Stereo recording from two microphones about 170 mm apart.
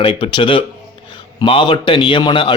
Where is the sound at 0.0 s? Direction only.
30° left (ahead or behind).